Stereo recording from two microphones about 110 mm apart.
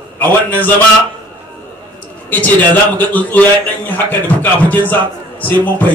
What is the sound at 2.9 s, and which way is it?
A man's voice, 15° left (ahead or behind).